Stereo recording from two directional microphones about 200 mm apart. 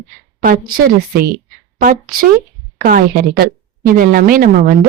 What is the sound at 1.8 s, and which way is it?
Speech, 45° right (ahead or behind).